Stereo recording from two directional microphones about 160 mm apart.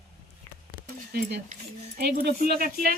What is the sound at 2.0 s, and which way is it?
Speech, 75° right (ahead or behind).